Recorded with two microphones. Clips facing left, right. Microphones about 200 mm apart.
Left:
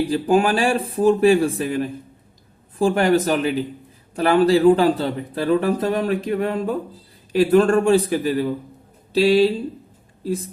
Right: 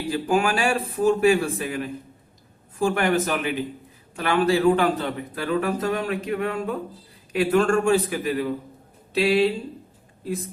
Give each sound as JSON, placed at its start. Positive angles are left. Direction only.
{"t": 0.1, "sound": "speech", "side_deg": 35}